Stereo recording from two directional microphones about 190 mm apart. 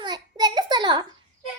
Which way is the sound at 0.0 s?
20° right (ahead or behind).